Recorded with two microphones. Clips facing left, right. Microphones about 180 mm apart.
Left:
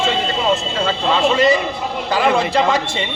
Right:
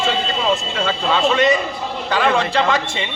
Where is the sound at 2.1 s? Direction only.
10° left (ahead or behind).